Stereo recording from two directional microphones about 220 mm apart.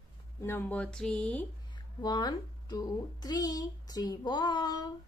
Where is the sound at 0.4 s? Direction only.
10° left (ahead or behind).